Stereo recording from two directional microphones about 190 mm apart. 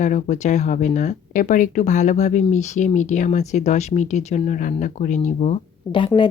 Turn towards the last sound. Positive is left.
turn(degrees=25)  # may be behind; listen again after turning